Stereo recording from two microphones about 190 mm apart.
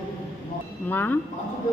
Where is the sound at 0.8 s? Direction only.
10° left (ahead or behind).